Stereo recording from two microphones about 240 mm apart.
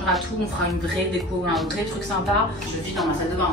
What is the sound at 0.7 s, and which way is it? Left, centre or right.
A woman's voice, centre.